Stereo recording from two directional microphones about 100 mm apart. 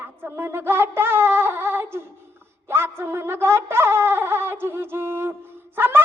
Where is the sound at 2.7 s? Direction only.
25° right (ahead or behind).